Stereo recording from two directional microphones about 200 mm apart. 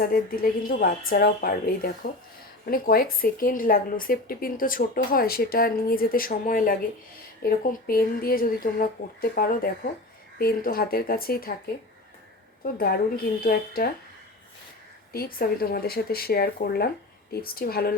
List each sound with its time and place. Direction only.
0.0 s speech: 45° left (ahead or behind)
12.6 s speech: 50° left (ahead or behind)
15.1 s speech: 50° left (ahead or behind)